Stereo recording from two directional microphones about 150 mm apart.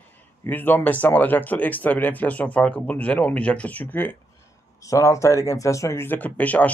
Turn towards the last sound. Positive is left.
turn(degrees=10)  # may be behind; listen again after turning